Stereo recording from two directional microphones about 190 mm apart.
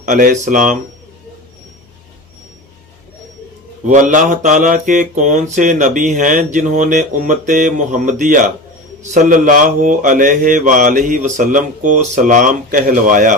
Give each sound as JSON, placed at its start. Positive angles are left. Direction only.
{"t": 0.0, "sound": "mantra", "side_deg": -40}
{"t": 3.8, "sound": "mantra", "side_deg": -40}